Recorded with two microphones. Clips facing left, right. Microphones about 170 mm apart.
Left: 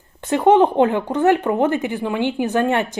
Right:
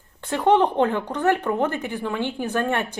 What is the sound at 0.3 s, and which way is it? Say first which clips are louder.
Speech: left 5 dB; 15° left (ahead or behind).